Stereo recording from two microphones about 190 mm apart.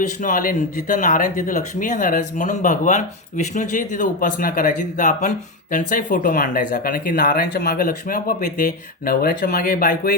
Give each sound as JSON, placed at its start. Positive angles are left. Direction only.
{"t": 0.2, "sound": "speech", "side_deg": 45}